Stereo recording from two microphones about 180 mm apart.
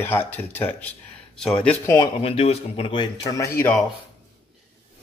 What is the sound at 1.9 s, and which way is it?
A man's voice, 30° left (ahead or behind).